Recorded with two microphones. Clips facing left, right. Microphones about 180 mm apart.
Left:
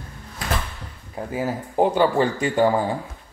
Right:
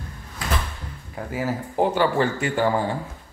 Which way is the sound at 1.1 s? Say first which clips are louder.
Left 1 dB; 20° left (ahead or behind).